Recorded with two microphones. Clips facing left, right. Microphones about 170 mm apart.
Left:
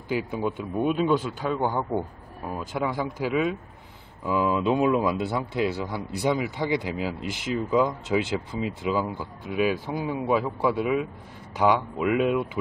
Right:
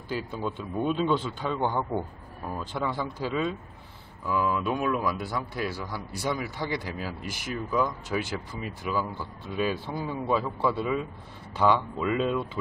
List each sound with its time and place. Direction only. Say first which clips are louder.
0.1 s a man's voice: left 5 dB; 15° left (ahead or behind)